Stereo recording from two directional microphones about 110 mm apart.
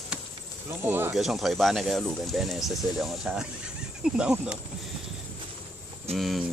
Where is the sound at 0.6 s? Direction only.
20° right (ahead or behind).